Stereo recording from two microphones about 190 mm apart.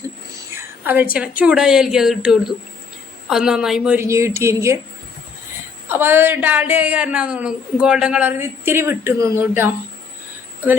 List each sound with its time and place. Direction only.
0.5 s a sound: 10° right (ahead or behind)
1.1 s a woman's voice: 5° right (ahead or behind)
5.9 s a woman's voice: 10° right (ahead or behind)